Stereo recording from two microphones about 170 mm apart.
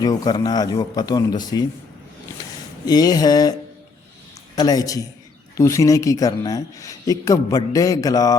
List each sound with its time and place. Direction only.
0.0 s speech: 25° left (ahead or behind)
2.8 s speech: 25° left (ahead or behind)
4.5 s speech: 25° left (ahead or behind)